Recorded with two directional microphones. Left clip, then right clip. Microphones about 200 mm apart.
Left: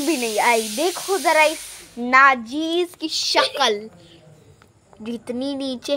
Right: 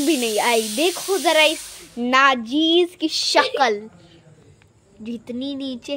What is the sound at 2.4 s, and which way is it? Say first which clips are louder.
Speech: right 5 dB; 35° right (ahead or behind).